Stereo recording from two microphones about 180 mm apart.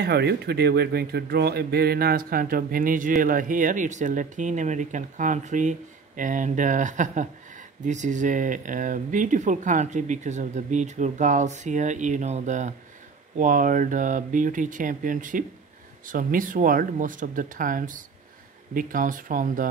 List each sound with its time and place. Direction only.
0.0 s speech: 65° right (ahead or behind); by 19.7 s 45° right (ahead or behind)